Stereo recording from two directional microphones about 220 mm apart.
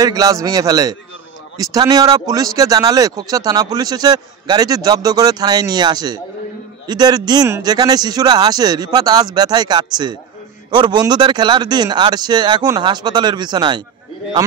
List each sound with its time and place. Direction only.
0.0 s a man's voice: 15° right (ahead or behind)